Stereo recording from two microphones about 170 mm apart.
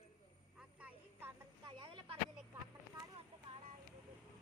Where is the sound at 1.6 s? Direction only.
30° right (ahead or behind).